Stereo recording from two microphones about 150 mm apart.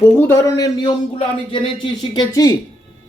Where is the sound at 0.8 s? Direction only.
35° left (ahead or behind).